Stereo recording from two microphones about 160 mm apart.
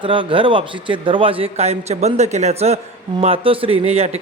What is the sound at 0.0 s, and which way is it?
A man's voice, 30° right (ahead or behind).